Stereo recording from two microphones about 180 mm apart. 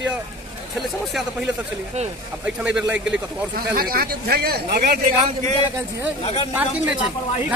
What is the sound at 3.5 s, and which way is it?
Speech, 55° right (ahead or behind).